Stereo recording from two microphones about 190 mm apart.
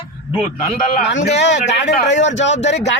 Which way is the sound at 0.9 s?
65° left (ahead or behind).